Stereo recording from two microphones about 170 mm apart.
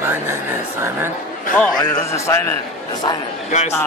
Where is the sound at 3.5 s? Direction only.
45° left (ahead or behind).